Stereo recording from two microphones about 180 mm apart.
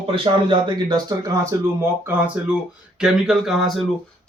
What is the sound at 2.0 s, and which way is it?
A man's voice, 10° right (ahead or behind).